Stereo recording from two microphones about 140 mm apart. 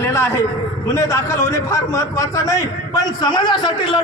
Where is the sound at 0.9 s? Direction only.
20° left (ahead or behind).